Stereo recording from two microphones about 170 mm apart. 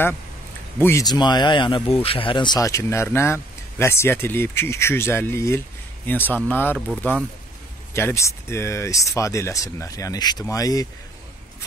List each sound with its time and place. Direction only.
0.7 s speech: 15° left (ahead or behind)